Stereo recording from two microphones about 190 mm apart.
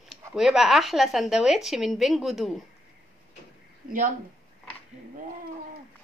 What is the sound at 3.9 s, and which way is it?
Speech, 45° right (ahead or behind).